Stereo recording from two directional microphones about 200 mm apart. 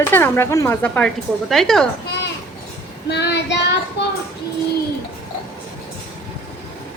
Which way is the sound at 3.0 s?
55° left (ahead or behind).